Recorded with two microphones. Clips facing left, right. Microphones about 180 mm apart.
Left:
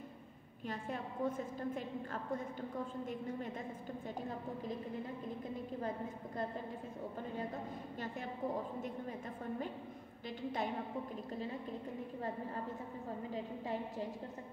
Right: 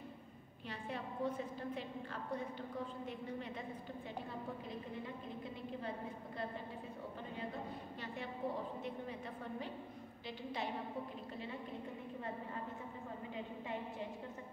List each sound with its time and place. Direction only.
0.7 s a woman's voice: 45° left (ahead or behind)